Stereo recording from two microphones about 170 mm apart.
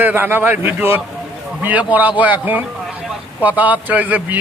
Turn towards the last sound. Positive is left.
turn(degrees=-10)  # may be behind; listen again after turning